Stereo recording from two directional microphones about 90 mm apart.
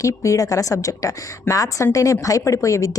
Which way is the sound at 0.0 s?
35° left (ahead or behind).